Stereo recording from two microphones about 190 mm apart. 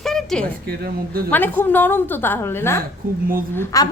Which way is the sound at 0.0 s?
Centre (ahead or behind).